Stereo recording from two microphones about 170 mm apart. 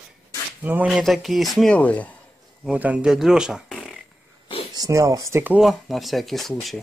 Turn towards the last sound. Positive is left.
turn(degrees=0)  # may be behind; listen again after turning